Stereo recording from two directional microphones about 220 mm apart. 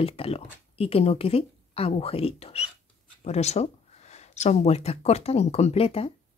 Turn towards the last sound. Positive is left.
turn(degrees=25)  # may be behind; listen again after turning